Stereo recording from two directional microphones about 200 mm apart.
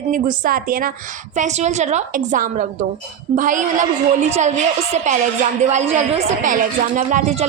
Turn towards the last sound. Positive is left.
turn(degrees=-35)  # may be behind; listen again after turning